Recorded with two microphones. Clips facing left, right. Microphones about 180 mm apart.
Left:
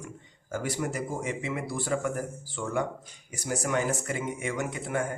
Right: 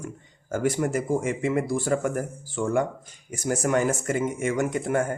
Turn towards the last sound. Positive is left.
turn(degrees=-45)  # may be behind; listen again after turning